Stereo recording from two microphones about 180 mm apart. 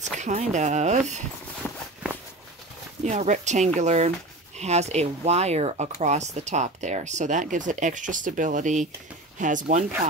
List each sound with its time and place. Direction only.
0.0 s speech: 40° right (ahead or behind)
3.1 s speech: 40° right (ahead or behind)